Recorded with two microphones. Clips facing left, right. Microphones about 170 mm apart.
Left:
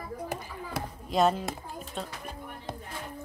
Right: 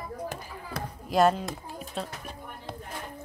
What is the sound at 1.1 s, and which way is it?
Speech, centre (ahead or behind).